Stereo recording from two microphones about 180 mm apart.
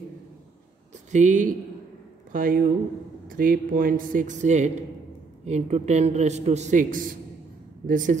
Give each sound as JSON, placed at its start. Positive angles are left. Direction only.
{"t": 1.1, "sound": "a man's voice", "side_deg": -45}